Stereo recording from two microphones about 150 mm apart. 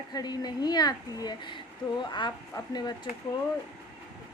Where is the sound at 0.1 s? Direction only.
25° left (ahead or behind).